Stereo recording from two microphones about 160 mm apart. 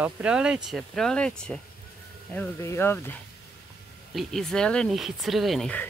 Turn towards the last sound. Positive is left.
turn(degrees=5)  # may be behind; listen again after turning